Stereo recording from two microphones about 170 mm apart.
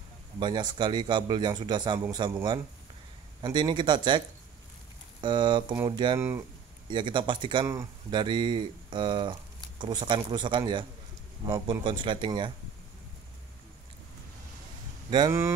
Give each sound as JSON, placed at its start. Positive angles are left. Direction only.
{"t": 0.4, "sound": "speech", "side_deg": -25}
{"t": 5.2, "sound": "speech", "side_deg": -25}
{"t": 6.1, "sound": "speech", "side_deg": -15}
{"t": 6.9, "sound": "speech", "side_deg": -30}
{"t": 15.0, "sound": "speech", "side_deg": -25}